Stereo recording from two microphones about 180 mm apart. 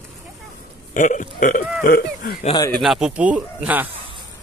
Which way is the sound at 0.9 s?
45° left (ahead or behind).